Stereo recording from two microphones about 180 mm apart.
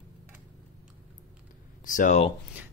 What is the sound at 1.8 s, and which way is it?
Speech, 45° left (ahead or behind).